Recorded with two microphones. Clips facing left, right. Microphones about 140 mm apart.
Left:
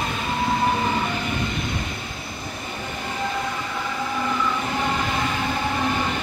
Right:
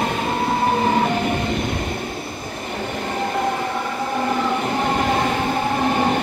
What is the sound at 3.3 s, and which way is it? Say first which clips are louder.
Train: right 6 dB; 55° right (ahead or behind).